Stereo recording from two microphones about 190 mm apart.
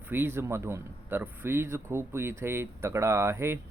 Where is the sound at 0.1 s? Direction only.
10° right (ahead or behind).